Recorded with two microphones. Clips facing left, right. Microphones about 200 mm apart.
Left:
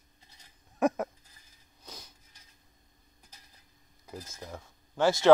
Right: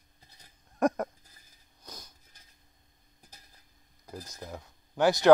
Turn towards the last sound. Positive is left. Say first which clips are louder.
# right 1 dB
turn(degrees=-15)  # may be behind; listen again after turning